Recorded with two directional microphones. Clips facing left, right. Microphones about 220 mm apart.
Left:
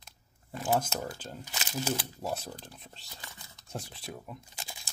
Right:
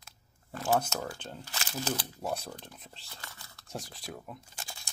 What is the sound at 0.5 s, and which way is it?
Speech, 20° left (ahead or behind).